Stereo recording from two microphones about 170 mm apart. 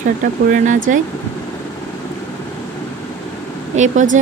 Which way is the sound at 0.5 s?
50° right (ahead or behind).